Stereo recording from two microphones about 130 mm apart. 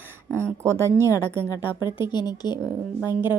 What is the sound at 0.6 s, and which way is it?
Speech, 20° right (ahead or behind).